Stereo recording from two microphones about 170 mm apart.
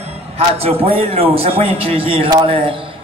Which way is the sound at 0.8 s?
35° right (ahead or behind).